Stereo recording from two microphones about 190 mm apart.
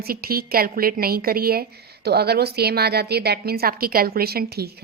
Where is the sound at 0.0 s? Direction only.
50° right (ahead or behind).